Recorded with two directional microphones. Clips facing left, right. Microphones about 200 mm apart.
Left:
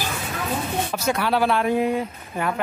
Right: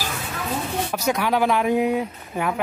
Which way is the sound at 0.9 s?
15° right (ahead or behind).